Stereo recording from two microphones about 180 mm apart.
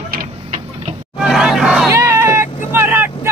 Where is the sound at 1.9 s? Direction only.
15° right (ahead or behind).